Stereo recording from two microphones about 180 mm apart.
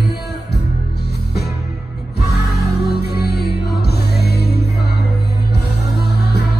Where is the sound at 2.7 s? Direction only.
65° left (ahead or behind).